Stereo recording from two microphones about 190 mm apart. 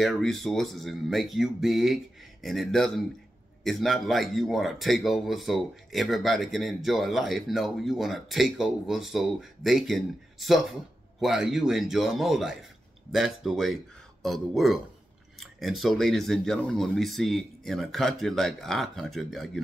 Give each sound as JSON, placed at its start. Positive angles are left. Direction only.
{"t": 0.0, "sound": "a man's voice", "side_deg": 0}